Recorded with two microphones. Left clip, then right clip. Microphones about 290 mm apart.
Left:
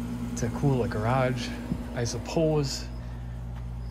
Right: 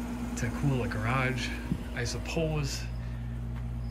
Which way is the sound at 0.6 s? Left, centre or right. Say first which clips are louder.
Left 6 dB; centre.